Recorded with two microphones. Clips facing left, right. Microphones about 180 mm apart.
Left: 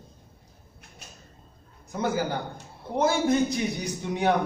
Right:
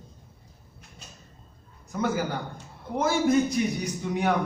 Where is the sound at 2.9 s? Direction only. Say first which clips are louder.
Even; 30° left (ahead or behind).